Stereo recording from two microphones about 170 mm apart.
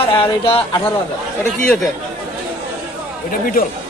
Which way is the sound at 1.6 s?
Centre (ahead or behind).